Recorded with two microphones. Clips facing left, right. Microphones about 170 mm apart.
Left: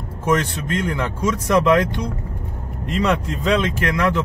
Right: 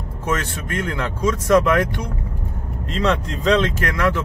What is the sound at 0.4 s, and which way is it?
Speech, 15° left (ahead or behind).